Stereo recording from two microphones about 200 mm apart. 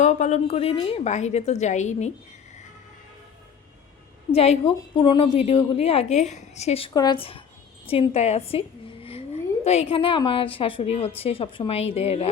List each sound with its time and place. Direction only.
0.0 s a woman's voice: 35° left (ahead or behind)
4.4 s a woman's voice: 30° left (ahead or behind)